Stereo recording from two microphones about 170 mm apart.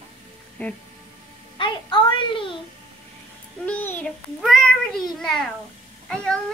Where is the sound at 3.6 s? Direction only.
10° left (ahead or behind).